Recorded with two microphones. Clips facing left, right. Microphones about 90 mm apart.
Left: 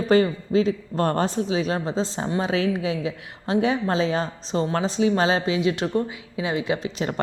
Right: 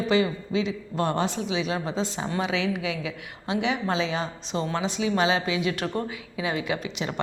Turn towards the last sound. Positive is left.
turn(degrees=40)  # may be behind; listen again after turning